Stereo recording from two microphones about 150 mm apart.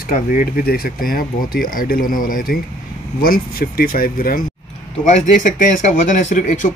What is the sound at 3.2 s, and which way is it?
Speech, 80° left.